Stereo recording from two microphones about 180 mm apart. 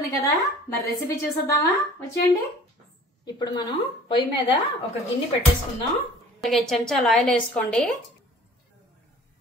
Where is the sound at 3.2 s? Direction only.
25° left (ahead or behind).